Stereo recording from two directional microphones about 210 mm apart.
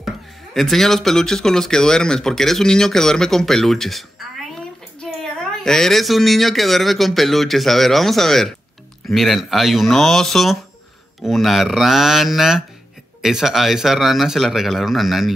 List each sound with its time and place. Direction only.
0.6 s speech: centre (ahead or behind)